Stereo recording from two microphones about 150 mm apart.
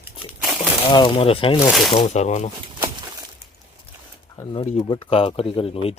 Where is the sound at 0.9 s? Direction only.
35° left (ahead or behind).